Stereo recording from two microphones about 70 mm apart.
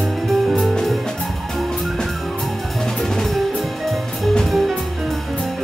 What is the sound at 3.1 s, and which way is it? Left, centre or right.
Music, centre.